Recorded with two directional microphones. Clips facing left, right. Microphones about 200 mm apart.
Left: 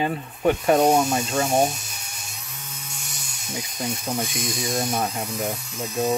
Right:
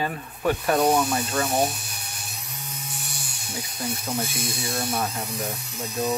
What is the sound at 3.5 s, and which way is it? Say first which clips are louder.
Speech: left 2 dB; 15° left (ahead or behind).